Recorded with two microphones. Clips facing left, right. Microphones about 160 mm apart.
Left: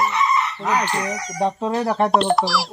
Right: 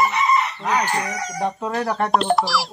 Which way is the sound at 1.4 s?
25° left (ahead or behind).